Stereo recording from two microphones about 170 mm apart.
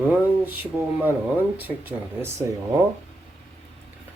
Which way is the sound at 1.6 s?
15° right (ahead or behind).